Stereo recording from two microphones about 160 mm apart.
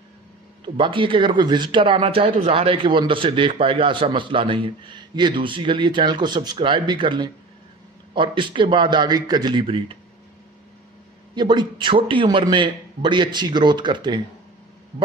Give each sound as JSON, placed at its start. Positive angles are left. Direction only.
{"t": 0.7, "sound": "a man's voice", "side_deg": -30}
{"t": 11.3, "sound": "a man's voice", "side_deg": -30}